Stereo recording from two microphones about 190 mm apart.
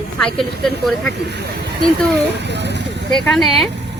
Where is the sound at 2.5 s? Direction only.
65° right (ahead or behind).